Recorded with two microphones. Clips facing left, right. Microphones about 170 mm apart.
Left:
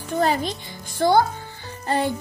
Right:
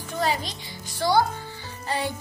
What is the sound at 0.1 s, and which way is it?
A child's voice, 50° left (ahead or behind).